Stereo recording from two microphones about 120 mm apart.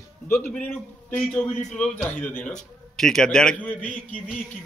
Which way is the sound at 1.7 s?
5° left (ahead or behind).